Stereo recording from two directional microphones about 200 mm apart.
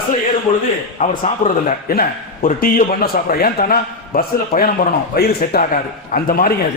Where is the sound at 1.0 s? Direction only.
40° left (ahead or behind).